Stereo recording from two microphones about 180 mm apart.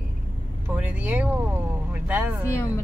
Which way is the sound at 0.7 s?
10° right (ahead or behind).